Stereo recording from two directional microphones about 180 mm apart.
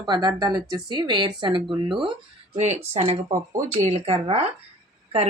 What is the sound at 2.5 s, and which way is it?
Speech, 40° right (ahead or behind).